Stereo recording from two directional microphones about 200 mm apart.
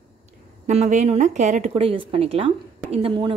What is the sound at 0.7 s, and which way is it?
A woman's voice, 35° right (ahead or behind).